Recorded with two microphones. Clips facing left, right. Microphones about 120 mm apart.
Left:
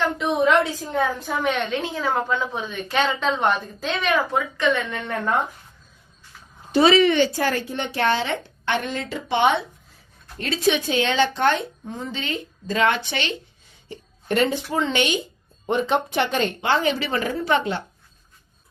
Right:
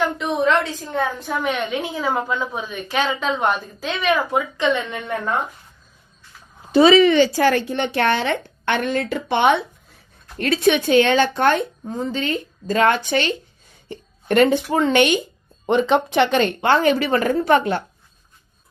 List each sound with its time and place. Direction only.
0.0 s a sound: centre (ahead or behind)
0.9 s a woman's voice: centre (ahead or behind)
4.3 s a woman's voice: 15° right (ahead or behind)
7.2 s a woman's voice: 85° right; by 13.3 s 45° right (ahead or behind)
13.8 s speech: 55° right (ahead or behind)
15.6 s speech: 90° right; by 17.8 s 50° right (ahead or behind)